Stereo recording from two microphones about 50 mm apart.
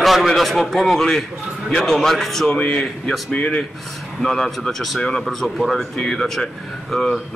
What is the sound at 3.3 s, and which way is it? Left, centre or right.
Speech, left.